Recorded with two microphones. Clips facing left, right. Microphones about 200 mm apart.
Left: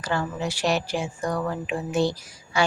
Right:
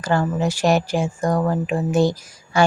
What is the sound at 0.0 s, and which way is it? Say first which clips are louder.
Speech: right 7 dB; 45° right (ahead or behind).